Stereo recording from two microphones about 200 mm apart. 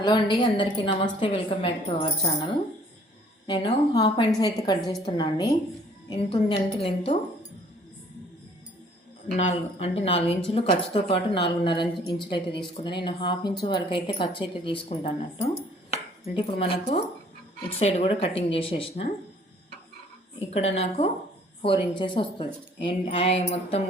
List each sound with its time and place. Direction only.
0.0 s a woman's voice: 25° left (ahead or behind)
9.5 s a woman's voice: 30° left (ahead or behind)
20.5 s a woman's voice: 30° left (ahead or behind)